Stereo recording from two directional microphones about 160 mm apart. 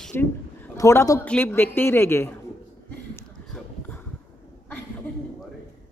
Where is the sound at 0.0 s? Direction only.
10° left (ahead or behind).